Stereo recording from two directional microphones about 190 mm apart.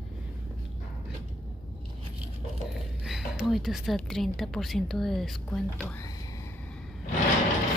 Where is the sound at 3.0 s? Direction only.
Centre (ahead or behind).